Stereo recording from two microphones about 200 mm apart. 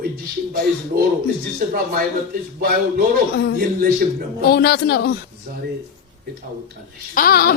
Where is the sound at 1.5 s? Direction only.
45° right (ahead or behind).